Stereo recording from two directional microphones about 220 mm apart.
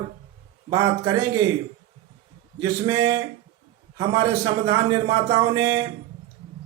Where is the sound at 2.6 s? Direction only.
15° right (ahead or behind).